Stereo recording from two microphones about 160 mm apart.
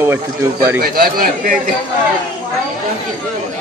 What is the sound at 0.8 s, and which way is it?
Speech, 65° right (ahead or behind).